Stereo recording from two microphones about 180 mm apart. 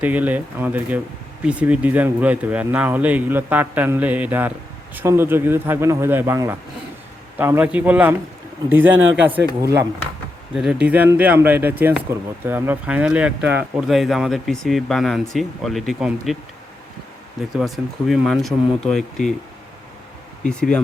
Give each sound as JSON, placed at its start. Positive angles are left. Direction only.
{"t": 0.0, "sound": "speech", "side_deg": -10}
{"t": 10.5, "sound": "speech", "side_deg": -5}
{"t": 17.5, "sound": "speech", "side_deg": 0}
{"t": 20.5, "sound": "speech", "side_deg": 5}